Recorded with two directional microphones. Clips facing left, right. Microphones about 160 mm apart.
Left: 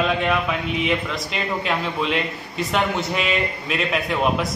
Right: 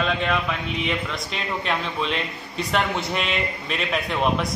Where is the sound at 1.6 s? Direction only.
Centre (ahead or behind).